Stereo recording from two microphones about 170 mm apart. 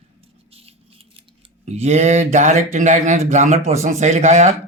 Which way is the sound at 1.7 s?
40° right (ahead or behind).